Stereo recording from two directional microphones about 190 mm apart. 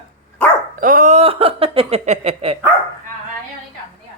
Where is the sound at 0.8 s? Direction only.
45° right (ahead or behind).